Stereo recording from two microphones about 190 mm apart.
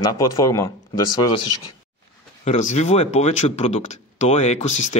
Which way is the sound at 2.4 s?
40° left (ahead or behind).